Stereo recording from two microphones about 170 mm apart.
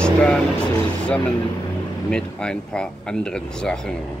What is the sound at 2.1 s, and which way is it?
Speech, 5° left (ahead or behind).